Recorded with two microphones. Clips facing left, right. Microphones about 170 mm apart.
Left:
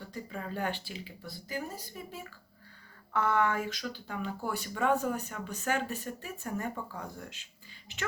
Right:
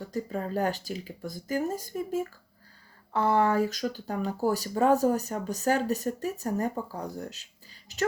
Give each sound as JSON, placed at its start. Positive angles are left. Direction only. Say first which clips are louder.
{"t": 0.0, "sound": "speech", "louder": "right 8 dB", "side_deg": -40}
{"t": 3.1, "sound": "speech", "louder": "right 5 dB", "side_deg": -30}